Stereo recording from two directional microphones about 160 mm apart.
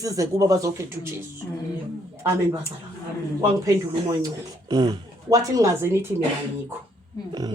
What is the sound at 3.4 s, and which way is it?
Speech, 20° right (ahead or behind).